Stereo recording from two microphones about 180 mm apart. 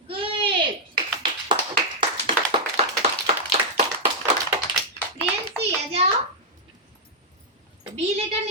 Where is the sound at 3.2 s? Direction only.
35° right (ahead or behind).